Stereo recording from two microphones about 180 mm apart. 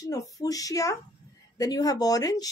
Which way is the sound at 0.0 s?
20° left (ahead or behind).